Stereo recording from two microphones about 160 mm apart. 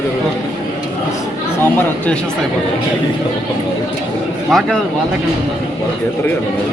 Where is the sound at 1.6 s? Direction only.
10° left (ahead or behind).